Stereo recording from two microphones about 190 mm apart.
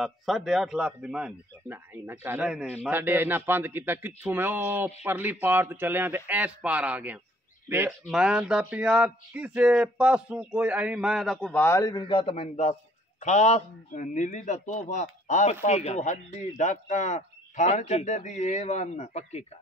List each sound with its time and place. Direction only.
0.0 s speech: centre (ahead or behind); by 19.4 s 35° left (ahead or behind)